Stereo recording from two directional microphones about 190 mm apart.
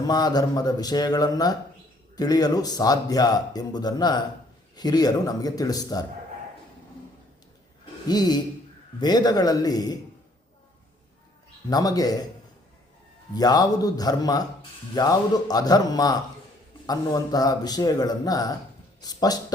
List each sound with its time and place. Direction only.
0.1 s speech: 20° left (ahead or behind)
8.0 s speech: 20° left (ahead or behind)
11.7 s speech: 20° left (ahead or behind)
13.3 s speech: 20° left (ahead or behind)